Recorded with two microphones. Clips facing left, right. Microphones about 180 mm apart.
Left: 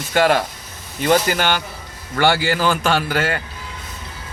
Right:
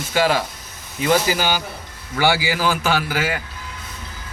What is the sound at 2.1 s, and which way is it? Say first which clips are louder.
Speech: left 2 dB; 5° right (ahead or behind).